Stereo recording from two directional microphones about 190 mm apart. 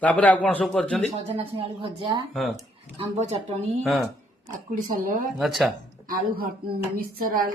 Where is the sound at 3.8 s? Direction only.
Centre (ahead or behind).